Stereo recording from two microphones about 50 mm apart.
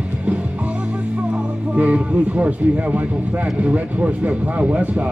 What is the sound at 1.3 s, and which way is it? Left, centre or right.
A man's voice, right.